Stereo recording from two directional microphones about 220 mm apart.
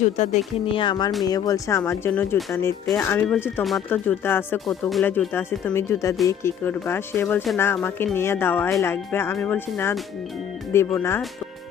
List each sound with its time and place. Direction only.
0.2 s speech: 25° left (ahead or behind)